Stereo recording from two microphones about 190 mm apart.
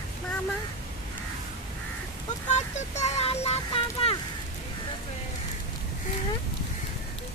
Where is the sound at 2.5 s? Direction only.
35° left (ahead or behind).